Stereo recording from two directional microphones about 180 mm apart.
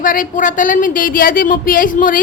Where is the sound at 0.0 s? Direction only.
50° left (ahead or behind).